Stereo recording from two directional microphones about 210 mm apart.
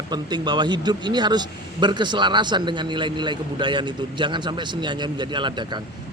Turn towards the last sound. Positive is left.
turn(degrees=-20)  # may be behind; listen again after turning